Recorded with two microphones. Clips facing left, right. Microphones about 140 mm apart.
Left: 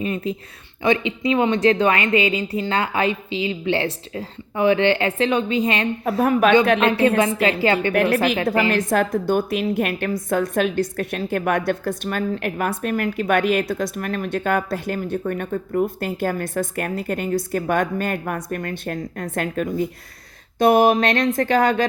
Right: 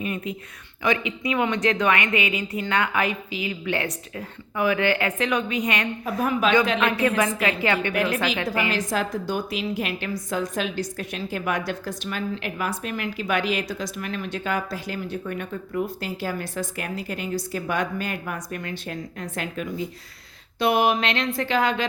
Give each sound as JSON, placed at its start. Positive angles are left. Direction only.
{"t": 0.0, "sound": "a woman's voice", "side_deg": 30}
{"t": 6.1, "sound": "speech", "side_deg": 55}
{"t": 6.7, "sound": "a woman's voice", "side_deg": 30}
{"t": 7.9, "sound": "a woman's voice", "side_deg": 55}